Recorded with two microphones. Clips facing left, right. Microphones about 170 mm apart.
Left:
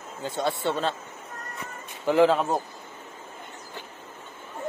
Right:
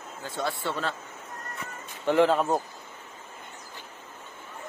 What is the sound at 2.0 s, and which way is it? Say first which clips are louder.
Speech: left 2 dB; centre (ahead or behind).